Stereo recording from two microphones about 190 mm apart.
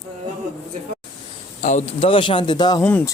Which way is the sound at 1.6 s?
35° left (ahead or behind).